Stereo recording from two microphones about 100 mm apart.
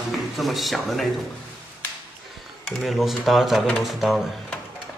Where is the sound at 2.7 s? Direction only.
Centre (ahead or behind).